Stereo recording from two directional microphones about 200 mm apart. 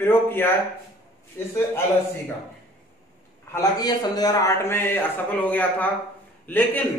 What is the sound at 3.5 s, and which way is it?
A man's voice, 20° left (ahead or behind).